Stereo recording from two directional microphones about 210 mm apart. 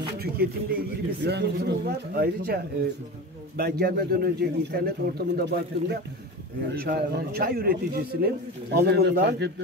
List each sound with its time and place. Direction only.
0.2 s a man's voice: 45° right (ahead or behind)